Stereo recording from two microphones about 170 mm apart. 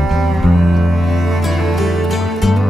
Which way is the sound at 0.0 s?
Centre (ahead or behind).